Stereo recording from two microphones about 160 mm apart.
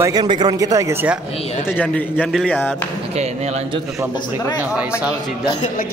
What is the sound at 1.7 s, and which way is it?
A man's voice, 10° left (ahead or behind).